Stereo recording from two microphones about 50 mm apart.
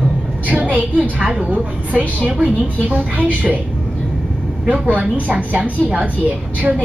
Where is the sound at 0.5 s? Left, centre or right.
Right.